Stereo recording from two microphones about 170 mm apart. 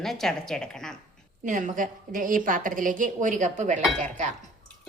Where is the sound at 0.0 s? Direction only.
Centre (ahead or behind).